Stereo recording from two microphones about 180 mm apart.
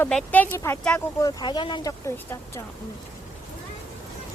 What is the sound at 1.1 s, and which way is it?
Speech, 20° left (ahead or behind).